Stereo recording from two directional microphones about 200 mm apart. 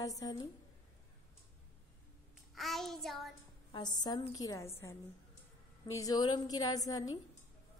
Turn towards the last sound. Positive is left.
turn(degrees=20)  # may be behind; listen again after turning